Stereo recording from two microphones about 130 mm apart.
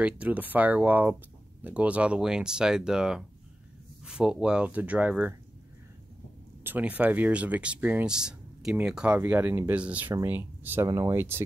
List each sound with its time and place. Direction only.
0.0 s speech: 10° right (ahead or behind)
6.6 s speech: 15° right (ahead or behind)